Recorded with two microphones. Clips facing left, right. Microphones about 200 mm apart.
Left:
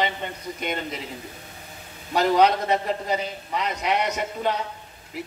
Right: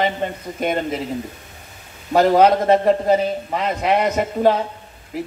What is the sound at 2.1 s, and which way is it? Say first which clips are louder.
Speech: right 6 dB; 50° right (ahead or behind).